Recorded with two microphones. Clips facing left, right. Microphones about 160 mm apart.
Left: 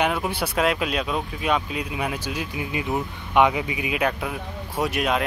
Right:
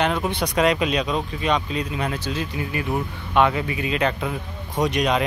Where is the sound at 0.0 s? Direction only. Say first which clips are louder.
Right 1 dB; 10° left (ahead or behind).